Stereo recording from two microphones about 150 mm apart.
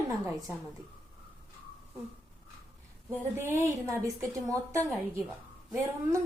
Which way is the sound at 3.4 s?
15° right (ahead or behind).